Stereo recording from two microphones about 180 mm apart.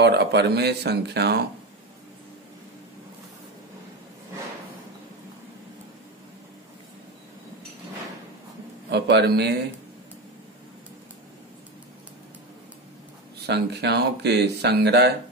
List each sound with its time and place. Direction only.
0.0 s speech: 70° right (ahead or behind)
8.9 s a man's voice: 70° right (ahead or behind)
13.5 s speech: 65° right (ahead or behind)